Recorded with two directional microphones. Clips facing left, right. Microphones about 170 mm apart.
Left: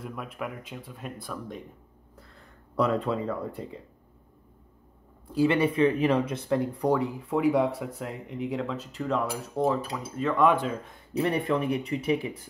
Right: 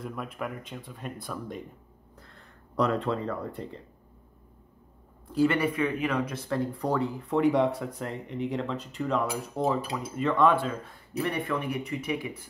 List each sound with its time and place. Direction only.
0.0 s speech: centre (ahead or behind)
5.3 s speech: 10° left (ahead or behind)
5.6 s speech: 30° left (ahead or behind); by 10.3 s 5° right (ahead or behind)
10.3 s speech: 15° left (ahead or behind)
11.1 s speech: 30° left (ahead or behind)